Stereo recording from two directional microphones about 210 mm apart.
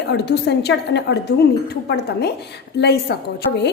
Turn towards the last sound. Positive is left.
turn(degrees=50)  # may be behind; listen again after turning